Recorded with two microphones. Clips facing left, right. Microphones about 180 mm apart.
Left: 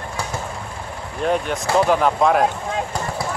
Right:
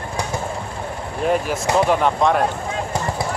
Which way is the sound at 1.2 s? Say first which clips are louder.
Right 1 dB; centre (ahead or behind).